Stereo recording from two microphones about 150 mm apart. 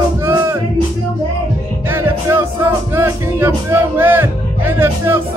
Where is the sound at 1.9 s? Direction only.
15° right (ahead or behind).